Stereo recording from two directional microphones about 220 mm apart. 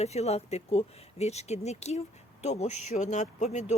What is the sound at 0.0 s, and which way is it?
Speech, 30° left (ahead or behind).